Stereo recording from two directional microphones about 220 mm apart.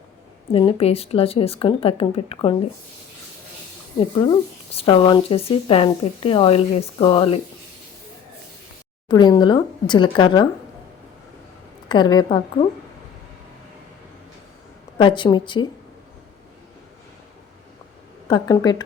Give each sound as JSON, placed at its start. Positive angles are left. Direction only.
{"t": 0.5, "sound": "speech", "side_deg": 25}
{"t": 4.2, "sound": "speech", "side_deg": 25}
{"t": 9.0, "sound": "speech", "side_deg": 20}
{"t": 11.9, "sound": "speech", "side_deg": 20}
{"t": 14.9, "sound": "speech", "side_deg": 20}
{"t": 18.3, "sound": "speech", "side_deg": 20}